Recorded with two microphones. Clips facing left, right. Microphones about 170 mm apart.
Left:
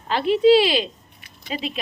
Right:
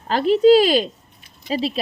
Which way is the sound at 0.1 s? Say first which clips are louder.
Right 2 dB; 45° right (ahead or behind).